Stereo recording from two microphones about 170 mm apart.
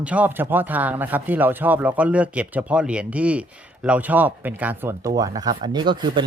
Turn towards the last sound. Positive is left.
turn(degrees=-25)  # may be behind; listen again after turning